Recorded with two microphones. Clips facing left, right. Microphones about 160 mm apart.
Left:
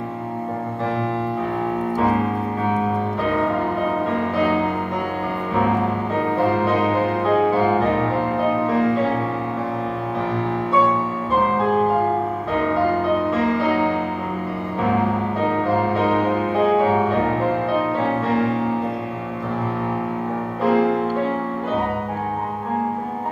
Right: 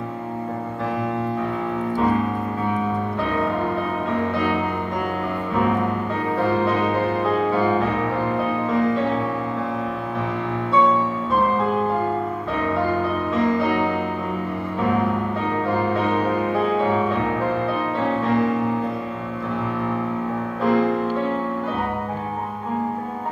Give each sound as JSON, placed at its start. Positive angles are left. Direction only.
{"t": 7.5, "sound": "music", "side_deg": 35}
{"t": 20.7, "sound": "music", "side_deg": 15}